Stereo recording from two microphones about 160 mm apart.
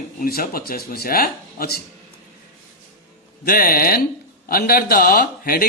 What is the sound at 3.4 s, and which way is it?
A man's voice, 65° left (ahead or behind).